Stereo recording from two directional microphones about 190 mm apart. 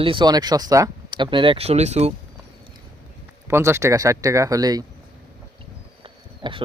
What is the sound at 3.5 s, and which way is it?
Speech, 15° right (ahead or behind).